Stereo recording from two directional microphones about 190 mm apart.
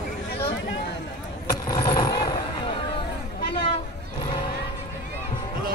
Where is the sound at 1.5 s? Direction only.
20° left (ahead or behind).